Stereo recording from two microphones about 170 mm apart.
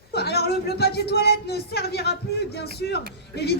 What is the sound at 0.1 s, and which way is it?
Speech, 70° left (ahead or behind).